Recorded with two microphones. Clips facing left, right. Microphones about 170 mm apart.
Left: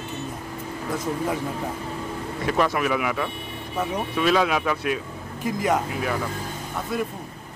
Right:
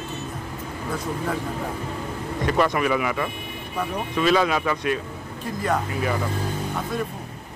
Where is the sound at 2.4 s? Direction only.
Centre (ahead or behind).